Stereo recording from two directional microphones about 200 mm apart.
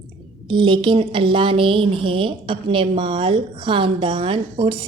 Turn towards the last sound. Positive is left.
turn(degrees=-25)  # may be behind; listen again after turning